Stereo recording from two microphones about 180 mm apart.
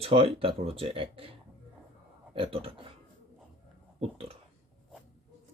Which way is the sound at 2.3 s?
30° right (ahead or behind).